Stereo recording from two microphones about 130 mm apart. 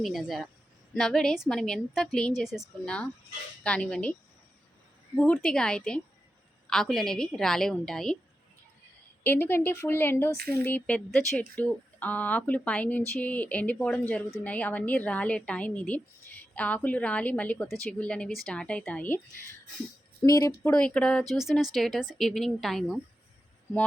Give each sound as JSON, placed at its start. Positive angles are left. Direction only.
{"t": 0.0, "sound": "a woman's voice", "side_deg": 0}
{"t": 5.1, "sound": "a woman's voice", "side_deg": 10}
{"t": 9.2, "sound": "speech", "side_deg": 15}
{"t": 20.2, "sound": "speech", "side_deg": 25}
{"t": 20.7, "sound": "a woman's voice", "side_deg": 10}